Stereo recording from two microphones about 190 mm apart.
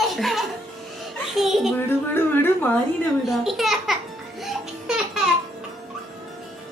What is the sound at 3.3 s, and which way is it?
Music, centre (ahead or behind).